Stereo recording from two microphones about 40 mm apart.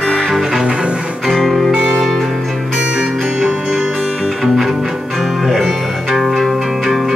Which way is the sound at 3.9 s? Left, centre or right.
Centre.